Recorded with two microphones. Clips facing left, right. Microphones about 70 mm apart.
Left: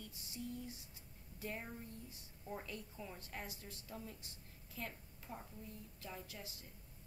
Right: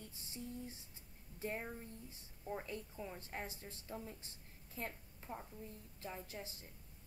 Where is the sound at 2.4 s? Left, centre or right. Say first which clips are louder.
Right 3 dB; centre.